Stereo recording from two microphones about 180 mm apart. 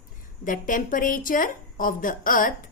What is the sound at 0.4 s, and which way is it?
A woman's voice, 50° left (ahead or behind).